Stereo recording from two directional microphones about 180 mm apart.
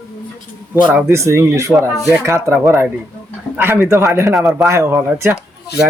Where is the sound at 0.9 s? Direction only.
10° right (ahead or behind).